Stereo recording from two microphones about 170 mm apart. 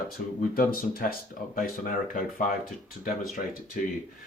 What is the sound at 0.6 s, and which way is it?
Speech, 60° left (ahead or behind).